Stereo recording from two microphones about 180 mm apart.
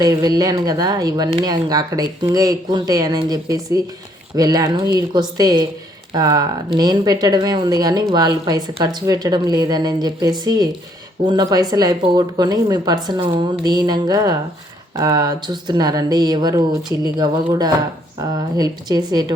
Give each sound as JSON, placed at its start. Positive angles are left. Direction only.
{"t": 0.0, "sound": "speech", "side_deg": -20}